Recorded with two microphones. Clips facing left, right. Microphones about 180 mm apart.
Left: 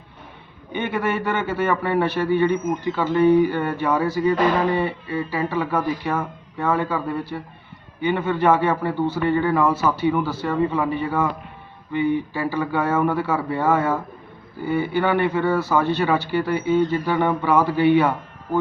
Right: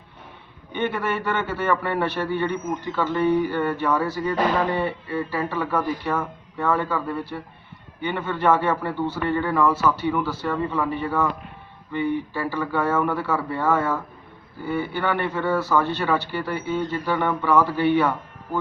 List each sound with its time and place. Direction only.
0.7 s a man's voice: 10° left (ahead or behind)